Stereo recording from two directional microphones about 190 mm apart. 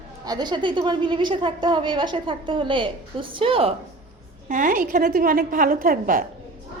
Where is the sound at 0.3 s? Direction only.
20° right (ahead or behind).